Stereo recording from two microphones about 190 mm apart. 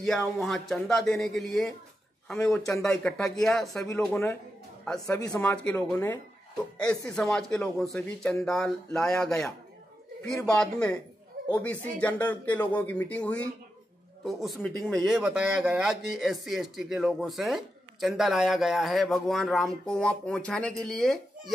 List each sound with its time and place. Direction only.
0.4 s speech: centre (ahead or behind)